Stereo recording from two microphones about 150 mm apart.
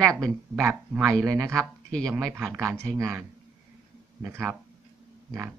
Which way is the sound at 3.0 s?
20° right (ahead or behind).